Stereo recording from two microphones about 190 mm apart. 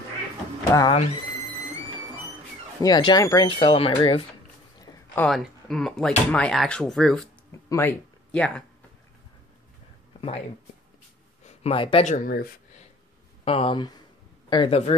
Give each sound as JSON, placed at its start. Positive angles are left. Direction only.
{"t": 0.7, "sound": "speech", "side_deg": 25}
{"t": 2.8, "sound": "speech", "side_deg": 20}
{"t": 4.7, "sound": "a sound", "side_deg": 10}
{"t": 5.3, "sound": "speech", "side_deg": 0}
{"t": 11.4, "sound": "speech", "side_deg": 30}
{"t": 13.5, "sound": "speech", "side_deg": 30}